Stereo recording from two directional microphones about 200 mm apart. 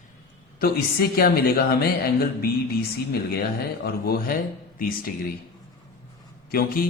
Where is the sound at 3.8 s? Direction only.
50° left (ahead or behind).